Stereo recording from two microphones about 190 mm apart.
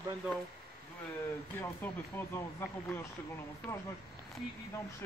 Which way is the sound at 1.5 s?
10° left (ahead or behind).